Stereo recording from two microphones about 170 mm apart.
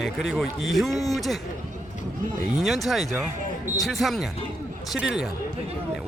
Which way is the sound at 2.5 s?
Centre (ahead or behind).